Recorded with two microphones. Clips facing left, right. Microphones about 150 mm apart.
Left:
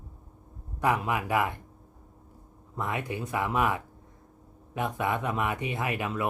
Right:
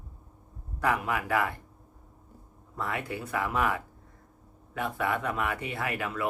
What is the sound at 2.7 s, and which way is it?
Speech, 20° left (ahead or behind).